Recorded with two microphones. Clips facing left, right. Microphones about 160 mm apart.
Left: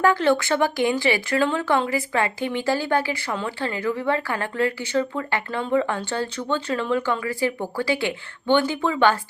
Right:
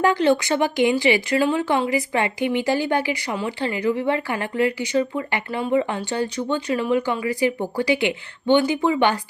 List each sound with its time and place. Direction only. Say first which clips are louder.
0.0 s speech: right 1 dB; 15° right (ahead or behind)